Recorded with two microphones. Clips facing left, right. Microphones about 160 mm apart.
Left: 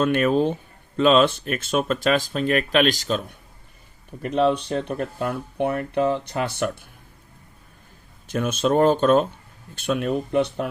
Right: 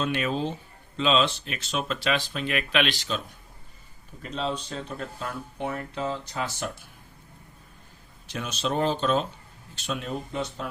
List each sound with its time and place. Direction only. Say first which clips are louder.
0.0 s speech: left 8 dB; 50° left (ahead or behind)
4.2 s speech: left 10 dB; 60° left (ahead or behind)
8.3 s speech: left 8 dB; 50° left (ahead or behind)